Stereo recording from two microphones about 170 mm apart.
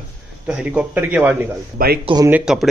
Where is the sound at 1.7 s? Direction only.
65° right (ahead or behind).